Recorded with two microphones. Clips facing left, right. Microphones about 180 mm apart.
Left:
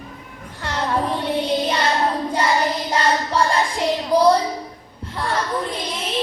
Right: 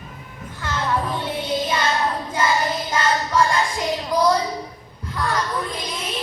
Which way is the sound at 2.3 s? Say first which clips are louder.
Right 1 dB; 35° left (ahead or behind).